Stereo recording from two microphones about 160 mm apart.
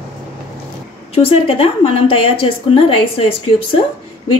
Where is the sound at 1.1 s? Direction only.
35° left (ahead or behind).